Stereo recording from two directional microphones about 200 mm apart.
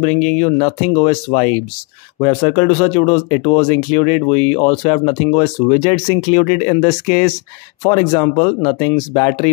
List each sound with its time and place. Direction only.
0.0 s speech: 30° left (ahead or behind)